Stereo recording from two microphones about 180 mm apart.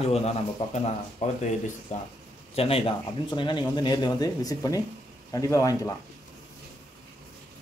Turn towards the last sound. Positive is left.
turn(degrees=20)  # may be behind; listen again after turning